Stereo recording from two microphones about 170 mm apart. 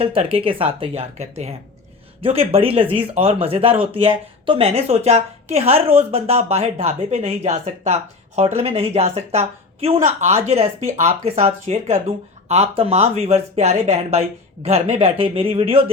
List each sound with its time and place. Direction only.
0.0 s speech: 35° right (ahead or behind)